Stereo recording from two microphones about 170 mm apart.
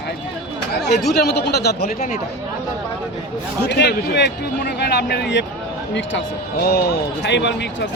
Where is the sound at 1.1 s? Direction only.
75° left (ahead or behind).